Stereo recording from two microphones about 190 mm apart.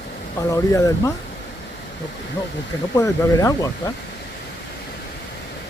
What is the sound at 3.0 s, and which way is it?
Speech, 15° left (ahead or behind).